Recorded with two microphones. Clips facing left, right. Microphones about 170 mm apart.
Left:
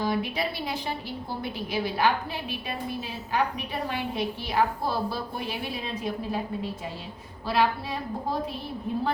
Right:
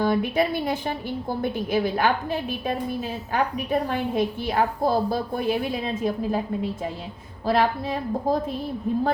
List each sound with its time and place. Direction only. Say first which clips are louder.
0.0 s a woman's voice: right 6 dB; 50° right (ahead or behind)
7.4 s a woman's voice: right 3 dB; 50° right (ahead or behind)